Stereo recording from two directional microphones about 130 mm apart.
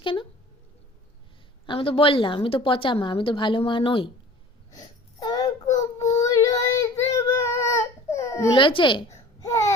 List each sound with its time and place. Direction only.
0.0 s speech: 40° left (ahead or behind)
1.6 s a woman's voice: 40° left (ahead or behind)
4.7 s child singing: 30° left (ahead or behind)
8.5 s a woman's voice: 40° left (ahead or behind)
9.1 s babbling: 25° left (ahead or behind)